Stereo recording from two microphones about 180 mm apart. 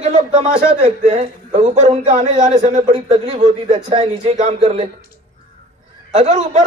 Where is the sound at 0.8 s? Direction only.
35° right (ahead or behind).